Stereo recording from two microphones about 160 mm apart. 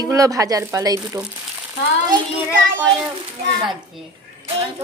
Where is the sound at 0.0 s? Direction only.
20° right (ahead or behind).